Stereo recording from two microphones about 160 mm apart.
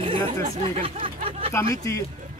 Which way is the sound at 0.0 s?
30° right (ahead or behind).